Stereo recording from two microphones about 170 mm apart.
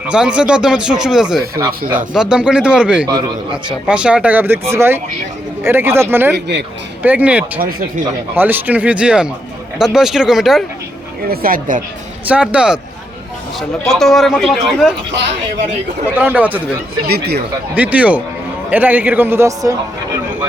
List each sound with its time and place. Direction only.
0.1 s speech: 5° right (ahead or behind)
1.6 s speech: 20° right (ahead or behind)
2.1 s speech: 5° right (ahead or behind)
3.1 s a man's voice: 25° right (ahead or behind)
3.5 s speech: 5° right (ahead or behind)
6.3 s speech: 85° right
7.0 s speech: 10° right (ahead or behind)
7.6 s speech: 60° right (ahead or behind)
8.4 s speech: 10° right (ahead or behind)
11.3 s speech: 55° right (ahead or behind)
12.3 s speech: 5° right (ahead or behind)
16.1 s speech: 10° right (ahead or behind)
17.1 s speech: 70° right (ahead or behind)
17.7 s speech: 10° right (ahead or behind)